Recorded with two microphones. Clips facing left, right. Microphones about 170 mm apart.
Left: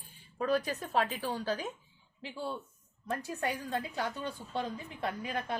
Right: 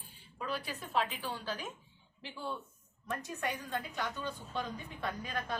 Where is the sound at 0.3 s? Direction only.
45° left (ahead or behind).